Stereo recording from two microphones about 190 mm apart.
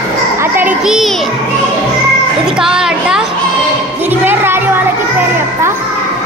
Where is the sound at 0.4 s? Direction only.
10° right (ahead or behind).